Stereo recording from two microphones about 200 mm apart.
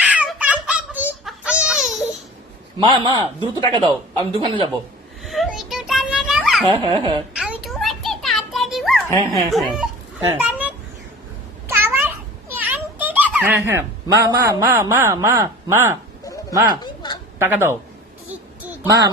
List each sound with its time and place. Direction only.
0.0 s a sound: 5° right (ahead or behind)
2.8 s speech: 20° right (ahead or behind)
5.2 s children playing: centre (ahead or behind)
6.7 s speech: 25° right (ahead or behind)
7.3 s a sound: centre (ahead or behind)
9.5 s speech: centre (ahead or behind)
10.3 s children playing: 5° right (ahead or behind)
11.7 s a sound: 10° right (ahead or behind)
16.2 s bow-wow: 15° left (ahead or behind)
16.8 s a sound: 20° left (ahead or behind)
17.4 s speech: 10° right (ahead or behind)
18.3 s child singing: 10° right (ahead or behind)